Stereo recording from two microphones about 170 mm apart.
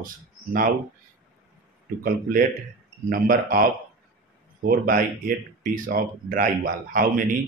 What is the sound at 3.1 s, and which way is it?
Speech, 55° right (ahead or behind).